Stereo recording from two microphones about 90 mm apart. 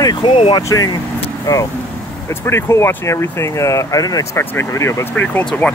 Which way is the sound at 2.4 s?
30° left (ahead or behind).